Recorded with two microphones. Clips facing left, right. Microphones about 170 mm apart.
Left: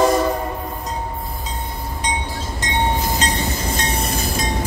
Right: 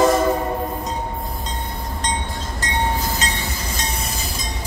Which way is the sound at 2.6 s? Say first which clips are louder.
Left 1 dB; 20° left (ahead or behind).